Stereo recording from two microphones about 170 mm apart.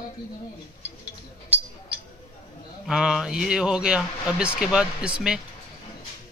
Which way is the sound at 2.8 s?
5° right (ahead or behind).